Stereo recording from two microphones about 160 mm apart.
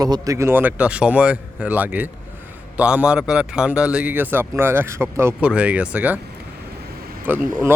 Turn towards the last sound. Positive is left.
turn(degrees=-10)  # may be behind; listen again after turning